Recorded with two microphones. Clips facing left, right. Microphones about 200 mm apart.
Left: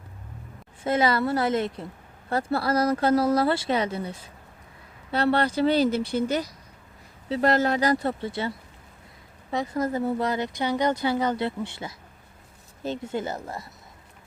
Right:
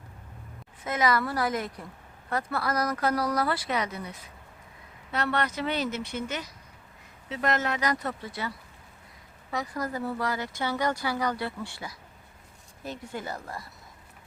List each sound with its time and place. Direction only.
0.9 s speech: 30° left (ahead or behind)